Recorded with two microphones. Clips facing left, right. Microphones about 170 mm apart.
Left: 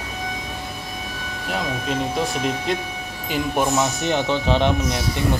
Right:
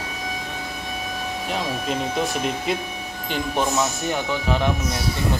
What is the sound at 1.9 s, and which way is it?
Speech, centre (ahead or behind).